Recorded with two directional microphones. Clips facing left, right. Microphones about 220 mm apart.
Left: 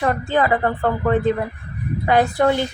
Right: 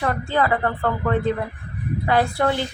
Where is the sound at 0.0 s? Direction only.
20° left (ahead or behind).